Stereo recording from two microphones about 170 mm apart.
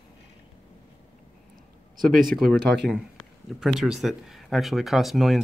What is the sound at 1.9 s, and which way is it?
Speech, 55° right (ahead or behind).